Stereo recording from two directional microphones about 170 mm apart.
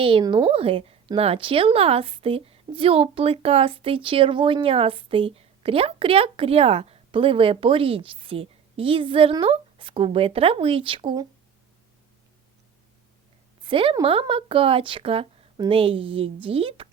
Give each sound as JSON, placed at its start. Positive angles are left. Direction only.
{"t": 0.0, "sound": "a woman's voice", "side_deg": -30}
{"t": 13.6, "sound": "a woman's voice", "side_deg": -30}